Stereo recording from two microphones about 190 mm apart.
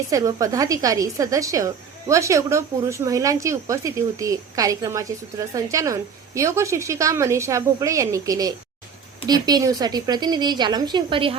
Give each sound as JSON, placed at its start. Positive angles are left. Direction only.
{"t": 0.1, "sound": "a woman's voice", "side_deg": -20}